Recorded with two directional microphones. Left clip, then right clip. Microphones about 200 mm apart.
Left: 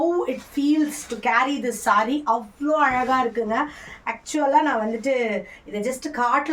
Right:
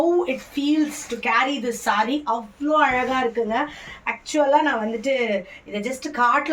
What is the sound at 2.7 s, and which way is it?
A woman's voice, 25° left (ahead or behind).